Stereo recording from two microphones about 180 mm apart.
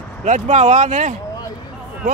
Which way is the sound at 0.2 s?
40° right (ahead or behind).